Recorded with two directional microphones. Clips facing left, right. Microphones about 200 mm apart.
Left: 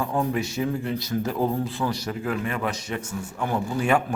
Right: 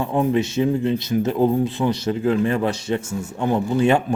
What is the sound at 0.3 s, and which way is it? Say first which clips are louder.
A man's voice: right 7 dB; 25° right (ahead or behind).